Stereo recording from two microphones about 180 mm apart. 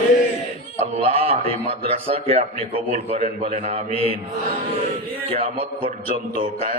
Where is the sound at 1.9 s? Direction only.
30° right (ahead or behind).